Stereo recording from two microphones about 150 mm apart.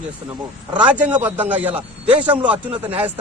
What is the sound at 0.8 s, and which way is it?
A man's voice, 10° right (ahead or behind).